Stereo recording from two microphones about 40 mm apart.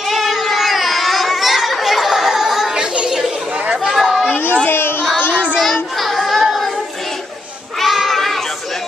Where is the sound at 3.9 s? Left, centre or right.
Centre.